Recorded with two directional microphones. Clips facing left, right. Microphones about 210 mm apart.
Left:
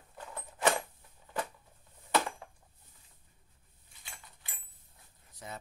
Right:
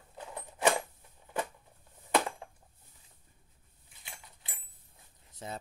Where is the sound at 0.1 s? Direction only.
15° right (ahead or behind).